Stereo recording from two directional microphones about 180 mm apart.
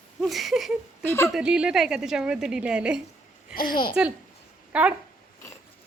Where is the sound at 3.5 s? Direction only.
50° left (ahead or behind).